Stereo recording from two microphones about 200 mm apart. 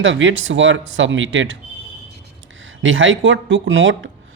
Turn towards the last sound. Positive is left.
turn(degrees=-70)  # may be behind; listen again after turning